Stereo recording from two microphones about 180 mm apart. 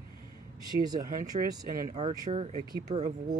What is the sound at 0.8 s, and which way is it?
Speech, 20° right (ahead or behind).